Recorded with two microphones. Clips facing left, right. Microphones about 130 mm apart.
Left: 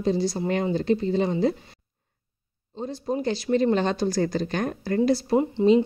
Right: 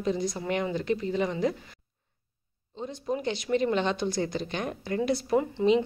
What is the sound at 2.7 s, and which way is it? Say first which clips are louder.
Speech: left 4 dB; 35° left (ahead or behind).